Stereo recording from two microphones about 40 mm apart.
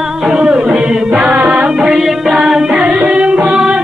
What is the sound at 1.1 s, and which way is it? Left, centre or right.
Music, right.